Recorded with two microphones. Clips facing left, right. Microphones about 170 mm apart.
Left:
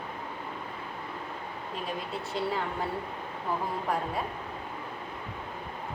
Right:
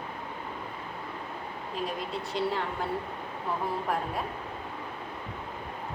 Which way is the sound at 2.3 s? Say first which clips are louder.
Right 1 dB; centre (ahead or behind).